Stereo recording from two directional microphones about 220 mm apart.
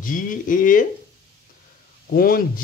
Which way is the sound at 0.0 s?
35° left (ahead or behind).